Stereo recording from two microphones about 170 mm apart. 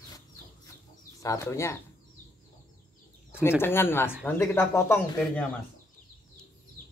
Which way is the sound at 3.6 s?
15° left (ahead or behind).